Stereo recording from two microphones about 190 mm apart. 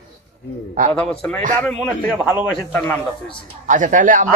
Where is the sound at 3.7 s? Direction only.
40° right (ahead or behind).